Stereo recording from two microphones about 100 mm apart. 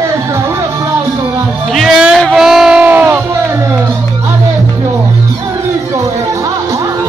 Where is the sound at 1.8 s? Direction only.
5° right (ahead or behind).